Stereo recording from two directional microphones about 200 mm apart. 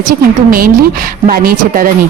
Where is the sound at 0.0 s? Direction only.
45° right (ahead or behind).